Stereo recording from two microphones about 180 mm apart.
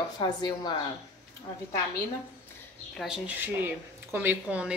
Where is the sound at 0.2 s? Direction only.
25° left (ahead or behind).